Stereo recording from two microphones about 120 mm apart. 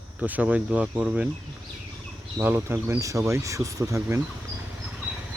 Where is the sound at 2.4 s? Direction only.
20° right (ahead or behind).